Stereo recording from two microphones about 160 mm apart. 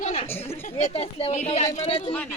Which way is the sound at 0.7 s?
40° left (ahead or behind).